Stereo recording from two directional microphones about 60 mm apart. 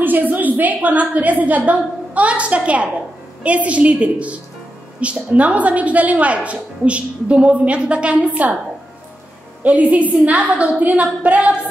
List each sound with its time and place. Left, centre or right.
0.0 s a woman's voice: right
9.6 s a woman's voice: right